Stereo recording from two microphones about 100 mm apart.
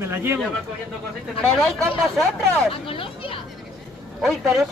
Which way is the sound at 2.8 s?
65° left (ahead or behind).